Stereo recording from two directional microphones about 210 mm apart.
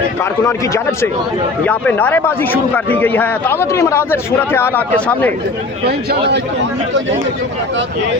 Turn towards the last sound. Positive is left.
turn(degrees=-50)  # may be behind; listen again after turning